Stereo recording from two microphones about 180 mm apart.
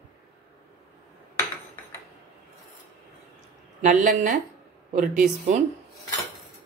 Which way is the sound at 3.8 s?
45° right (ahead or behind).